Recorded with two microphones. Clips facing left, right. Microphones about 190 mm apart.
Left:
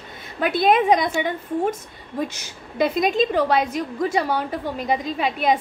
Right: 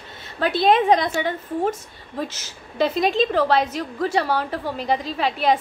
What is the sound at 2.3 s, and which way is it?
A woman's voice, 15° left (ahead or behind).